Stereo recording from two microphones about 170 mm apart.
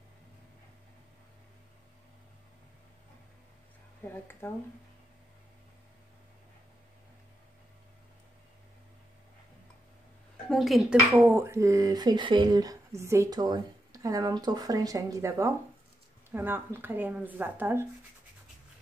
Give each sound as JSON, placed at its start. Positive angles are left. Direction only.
{"t": 4.0, "sound": "speech", "side_deg": 10}
{"t": 10.5, "sound": "speech", "side_deg": 0}
{"t": 11.1, "sound": "speech", "side_deg": -15}